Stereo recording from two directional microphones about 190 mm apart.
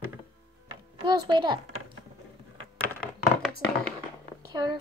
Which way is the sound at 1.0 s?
20° right (ahead or behind).